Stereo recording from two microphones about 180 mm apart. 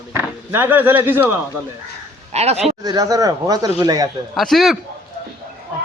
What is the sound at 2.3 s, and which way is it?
Speech, 35° right (ahead or behind).